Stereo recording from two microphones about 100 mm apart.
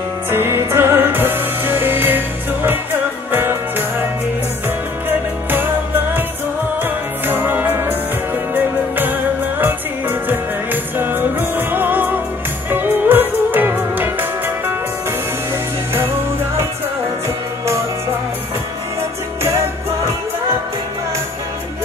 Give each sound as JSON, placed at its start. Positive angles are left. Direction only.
{"t": 0.3, "sound": "music", "side_deg": -25}
{"t": 6.8, "sound": "music", "side_deg": -20}